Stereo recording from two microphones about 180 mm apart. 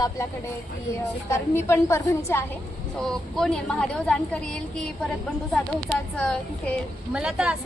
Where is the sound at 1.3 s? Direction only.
15° left (ahead or behind).